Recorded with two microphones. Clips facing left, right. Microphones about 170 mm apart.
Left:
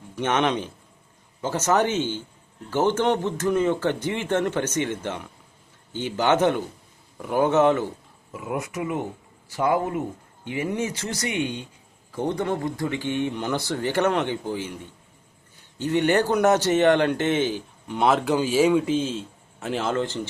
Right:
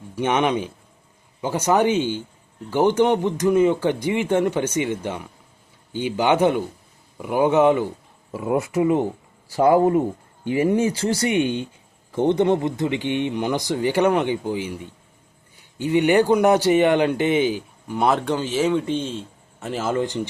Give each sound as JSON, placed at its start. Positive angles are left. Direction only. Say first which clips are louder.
{"t": 0.2, "sound": "a man's voice", "louder": "right 3 dB", "side_deg": -10}
{"t": 8.3, "sound": "a man's voice", "louder": "right 7 dB", "side_deg": -30}